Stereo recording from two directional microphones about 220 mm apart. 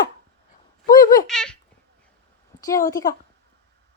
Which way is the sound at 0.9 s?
20° left (ahead or behind).